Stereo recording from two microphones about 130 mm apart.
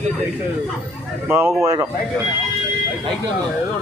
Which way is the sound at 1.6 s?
30° right (ahead or behind).